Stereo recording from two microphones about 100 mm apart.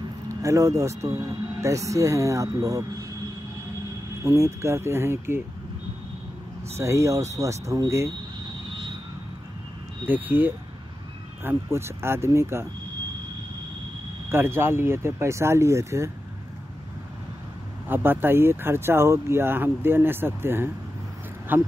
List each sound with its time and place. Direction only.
0.3 s speech: 35° right (ahead or behind)
4.2 s speech: 30° right (ahead or behind)
6.7 s speech: 30° right (ahead or behind)
10.0 s speech: 20° right (ahead or behind)
14.3 s speech: 25° right (ahead or behind)
17.8 s speech: 20° right (ahead or behind)